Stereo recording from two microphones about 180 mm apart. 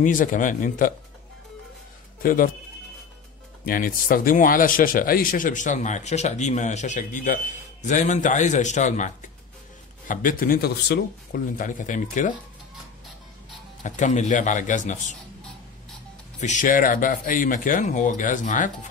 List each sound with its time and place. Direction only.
0.0 s speech: 45° left (ahead or behind)
2.2 s speech: 50° left (ahead or behind)
3.6 s speech: 50° left (ahead or behind)
13.8 s speech: 45° left (ahead or behind)
16.3 s speech: 45° left (ahead or behind)